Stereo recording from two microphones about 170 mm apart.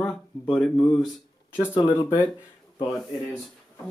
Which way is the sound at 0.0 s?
Centre (ahead or behind).